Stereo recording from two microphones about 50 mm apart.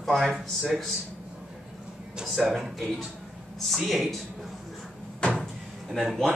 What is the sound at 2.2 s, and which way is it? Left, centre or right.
Speech, centre.